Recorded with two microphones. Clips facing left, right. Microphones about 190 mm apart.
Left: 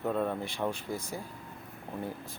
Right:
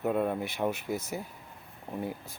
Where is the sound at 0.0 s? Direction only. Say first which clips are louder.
Right 2 dB; 10° right (ahead or behind).